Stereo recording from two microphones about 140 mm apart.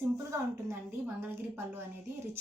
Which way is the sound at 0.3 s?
15° right (ahead or behind).